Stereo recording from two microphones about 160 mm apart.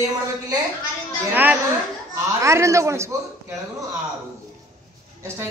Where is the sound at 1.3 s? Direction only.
10° right (ahead or behind).